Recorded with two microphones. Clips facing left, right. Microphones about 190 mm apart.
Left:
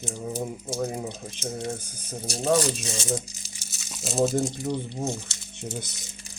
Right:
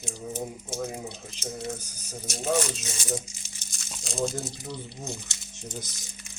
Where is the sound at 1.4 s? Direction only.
55° left (ahead or behind).